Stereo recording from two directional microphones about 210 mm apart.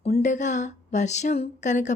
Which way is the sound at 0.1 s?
35° left (ahead or behind).